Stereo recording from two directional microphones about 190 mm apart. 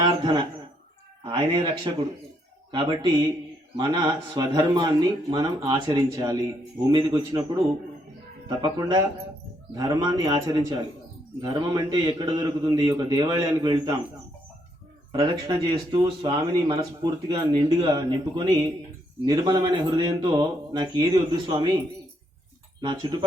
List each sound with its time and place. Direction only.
0.0 s a man's voice: 20° right (ahead or behind)
8.4 s a man's voice: 25° right (ahead or behind)
15.1 s a man's voice: 20° right (ahead or behind)
22.8 s a man's voice: 25° right (ahead or behind)